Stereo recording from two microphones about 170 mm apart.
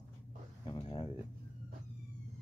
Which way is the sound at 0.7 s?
25° left (ahead or behind).